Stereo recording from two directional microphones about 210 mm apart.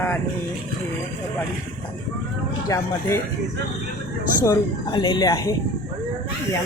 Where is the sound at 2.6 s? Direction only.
15° left (ahead or behind).